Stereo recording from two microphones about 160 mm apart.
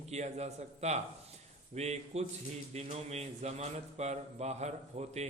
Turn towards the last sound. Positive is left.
turn(degrees=-45)  # may be behind; listen again after turning